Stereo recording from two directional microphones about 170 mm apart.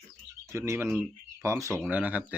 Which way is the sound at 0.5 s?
15° right (ahead or behind).